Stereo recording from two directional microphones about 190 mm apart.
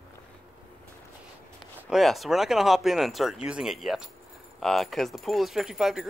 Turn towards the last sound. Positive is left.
turn(degrees=0)  # may be behind; listen again after turning